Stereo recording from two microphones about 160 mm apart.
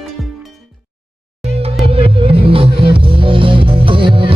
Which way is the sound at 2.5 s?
35° right (ahead or behind).